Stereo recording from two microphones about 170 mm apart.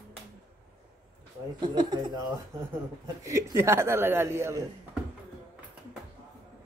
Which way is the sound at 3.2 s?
15° right (ahead or behind).